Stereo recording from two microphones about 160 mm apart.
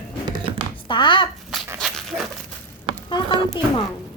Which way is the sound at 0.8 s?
30° left (ahead or behind).